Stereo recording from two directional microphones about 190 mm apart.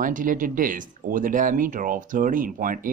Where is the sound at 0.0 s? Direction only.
45° right (ahead or behind).